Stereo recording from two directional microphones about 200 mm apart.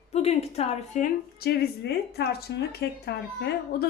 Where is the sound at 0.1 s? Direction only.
30° left (ahead or behind).